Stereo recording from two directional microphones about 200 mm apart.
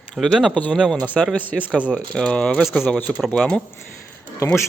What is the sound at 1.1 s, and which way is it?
Speech, 5° left (ahead or behind).